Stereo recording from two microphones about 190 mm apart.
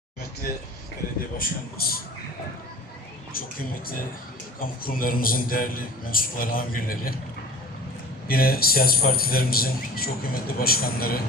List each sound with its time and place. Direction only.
0.4 s a man's voice: 50° left (ahead or behind)
4.6 s a man's voice: 50° left (ahead or behind)
8.3 s a man's voice: 50° left (ahead or behind)